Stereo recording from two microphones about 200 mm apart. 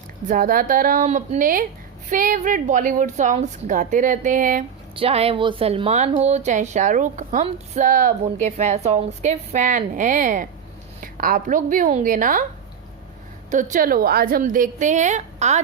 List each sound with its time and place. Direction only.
0.3 s a woman's voice: 45° right (ahead or behind)
4.9 s a woman's voice: 30° right (ahead or behind)
13.5 s a woman's voice: 40° right (ahead or behind)